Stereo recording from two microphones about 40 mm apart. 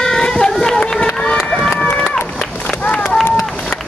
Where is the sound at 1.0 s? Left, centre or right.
Left.